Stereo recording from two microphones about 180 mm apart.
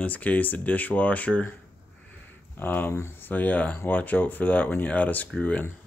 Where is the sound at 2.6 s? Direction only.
10° left (ahead or behind).